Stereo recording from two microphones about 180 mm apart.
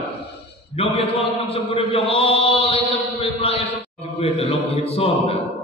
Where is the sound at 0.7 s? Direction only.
35° left (ahead or behind).